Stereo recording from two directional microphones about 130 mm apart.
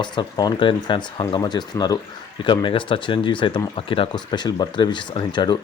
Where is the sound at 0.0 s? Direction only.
35° left (ahead or behind).